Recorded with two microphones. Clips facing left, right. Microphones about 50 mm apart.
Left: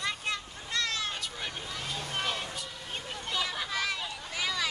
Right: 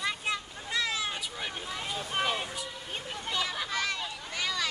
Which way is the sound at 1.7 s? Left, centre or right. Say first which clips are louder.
Right 4 dB; centre.